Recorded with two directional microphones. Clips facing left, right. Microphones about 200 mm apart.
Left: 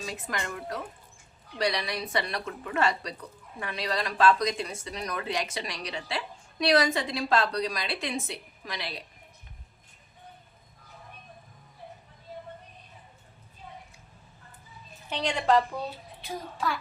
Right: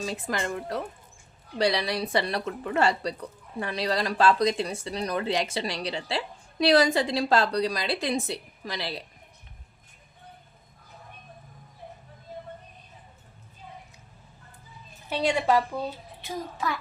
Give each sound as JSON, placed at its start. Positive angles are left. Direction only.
{"t": 0.0, "sound": "a woman's voice", "side_deg": -35}
{"t": 15.1, "sound": "a woman's voice", "side_deg": -10}